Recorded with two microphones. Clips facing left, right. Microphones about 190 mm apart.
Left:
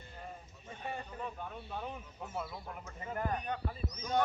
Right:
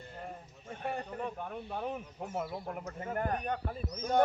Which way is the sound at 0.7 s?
55° right (ahead or behind).